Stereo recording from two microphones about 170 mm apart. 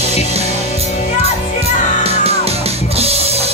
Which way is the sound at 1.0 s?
50° left (ahead or behind).